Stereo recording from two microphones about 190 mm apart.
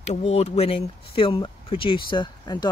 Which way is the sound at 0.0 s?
35° left (ahead or behind).